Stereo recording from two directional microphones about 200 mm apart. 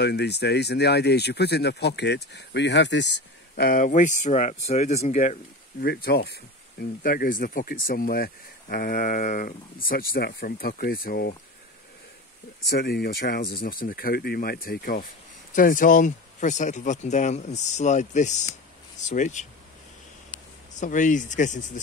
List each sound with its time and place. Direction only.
0.0 s speech: 55° left (ahead or behind); by 5.9 s 35° left (ahead or behind)
5.9 s speech: 50° left (ahead or behind)
12.6 s speech: 50° left (ahead or behind)
20.8 s speech: 40° left (ahead or behind)